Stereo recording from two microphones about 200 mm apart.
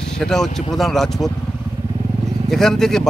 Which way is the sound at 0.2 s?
Centre (ahead or behind).